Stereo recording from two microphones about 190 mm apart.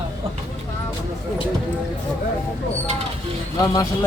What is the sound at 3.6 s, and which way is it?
Speech, 20° left (ahead or behind).